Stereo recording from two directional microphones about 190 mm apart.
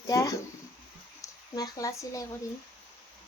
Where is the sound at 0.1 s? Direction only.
20° left (ahead or behind).